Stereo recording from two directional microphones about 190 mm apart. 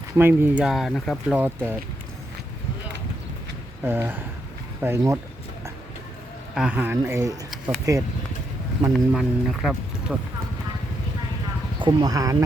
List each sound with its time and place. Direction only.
0.2 s speech: 10° right (ahead or behind)
3.8 s speech: 10° right (ahead or behind)
6.5 s speech: 5° right (ahead or behind)
8.9 s speech: centre (ahead or behind)
11.8 s speech: 20° right (ahead or behind)